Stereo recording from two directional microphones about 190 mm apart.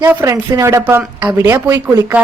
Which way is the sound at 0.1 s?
10° right (ahead or behind).